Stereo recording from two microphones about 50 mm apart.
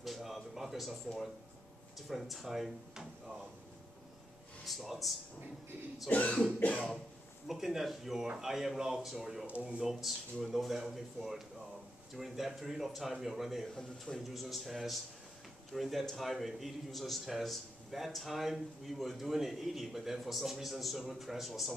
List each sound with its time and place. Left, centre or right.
0.0 s a sound: centre
2.0 s a man's voice: centre
4.6 s a man's voice: centre
6.0 s cough: left
7.4 s a man's voice: centre
9.5 s speech: right
9.8 s a man's voice: centre
13.7 s a man's voice: centre
14.2 s a man's voice: centre